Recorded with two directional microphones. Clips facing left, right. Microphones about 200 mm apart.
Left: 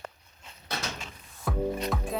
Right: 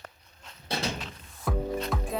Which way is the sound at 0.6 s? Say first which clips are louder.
Right 4 dB; 30° right (ahead or behind).